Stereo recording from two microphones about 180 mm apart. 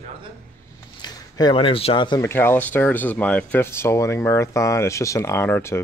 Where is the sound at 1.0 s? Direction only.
25° left (ahead or behind).